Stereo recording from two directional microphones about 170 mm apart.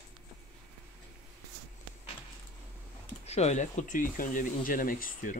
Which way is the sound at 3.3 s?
40° left (ahead or behind).